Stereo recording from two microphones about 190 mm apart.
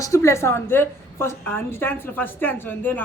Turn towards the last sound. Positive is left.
turn(degrees=10)  # may be behind; listen again after turning